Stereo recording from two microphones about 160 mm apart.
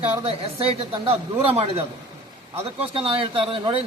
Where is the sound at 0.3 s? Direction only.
35° right (ahead or behind).